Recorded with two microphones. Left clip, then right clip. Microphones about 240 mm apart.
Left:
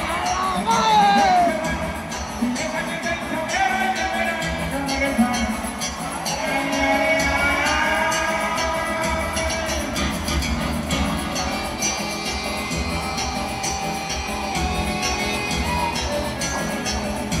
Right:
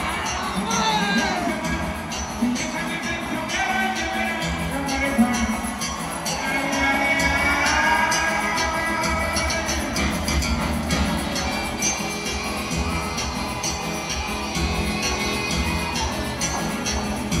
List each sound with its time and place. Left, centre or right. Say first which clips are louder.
0.7 s music: left 6 dB; centre